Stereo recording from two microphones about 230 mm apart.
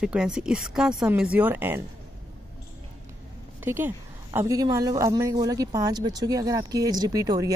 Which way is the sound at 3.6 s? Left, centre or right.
Centre.